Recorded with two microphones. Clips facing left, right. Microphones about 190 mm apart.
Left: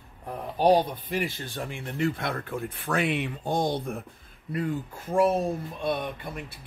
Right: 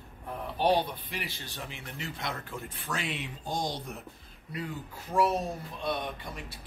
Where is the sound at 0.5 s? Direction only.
40° left (ahead or behind).